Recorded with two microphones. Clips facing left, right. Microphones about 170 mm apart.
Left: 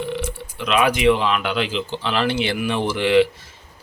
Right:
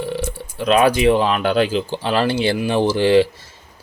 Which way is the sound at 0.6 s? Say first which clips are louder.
Right 3 dB; 40° right (ahead or behind).